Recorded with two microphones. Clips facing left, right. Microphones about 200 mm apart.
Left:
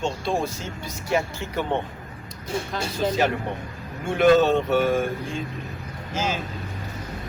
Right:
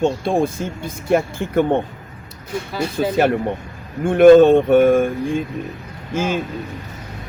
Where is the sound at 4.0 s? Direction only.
50° right (ahead or behind).